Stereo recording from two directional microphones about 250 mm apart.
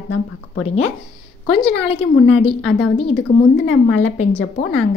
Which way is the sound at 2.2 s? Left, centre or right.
Left.